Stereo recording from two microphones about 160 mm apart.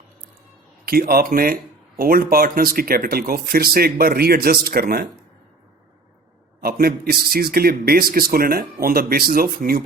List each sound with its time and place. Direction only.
0.9 s a man's voice: 70° right (ahead or behind)
6.6 s a man's voice: 70° right (ahead or behind)